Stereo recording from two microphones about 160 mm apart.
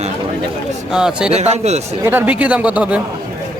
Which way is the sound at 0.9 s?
5° right (ahead or behind).